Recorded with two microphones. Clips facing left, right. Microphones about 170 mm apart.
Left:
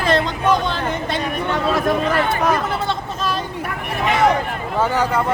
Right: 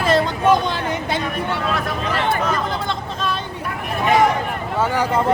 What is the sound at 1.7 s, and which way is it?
Speech, 45° left (ahead or behind).